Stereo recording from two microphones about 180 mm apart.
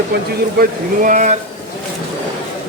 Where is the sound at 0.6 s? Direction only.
45° right (ahead or behind).